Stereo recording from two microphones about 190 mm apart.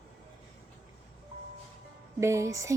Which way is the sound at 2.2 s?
15° right (ahead or behind).